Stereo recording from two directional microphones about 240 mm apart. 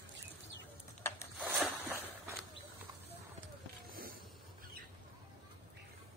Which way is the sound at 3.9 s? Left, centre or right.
Right.